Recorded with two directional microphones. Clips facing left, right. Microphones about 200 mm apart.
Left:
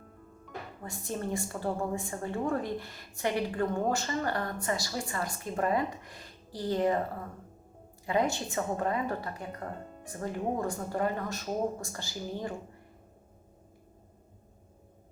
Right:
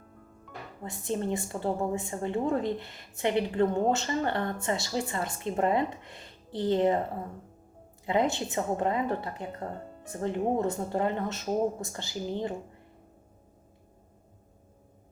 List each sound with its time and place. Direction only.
0.9 s a woman's voice: 20° right (ahead or behind)
8.0 s a woman's voice: 20° right (ahead or behind)